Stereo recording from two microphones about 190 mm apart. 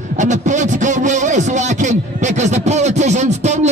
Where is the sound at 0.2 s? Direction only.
40° right (ahead or behind).